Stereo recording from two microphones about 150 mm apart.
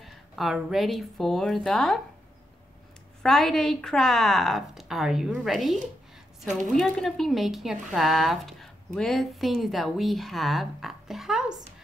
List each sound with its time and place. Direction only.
0.0 s speech: centre (ahead or behind)
3.2 s speech: centre (ahead or behind)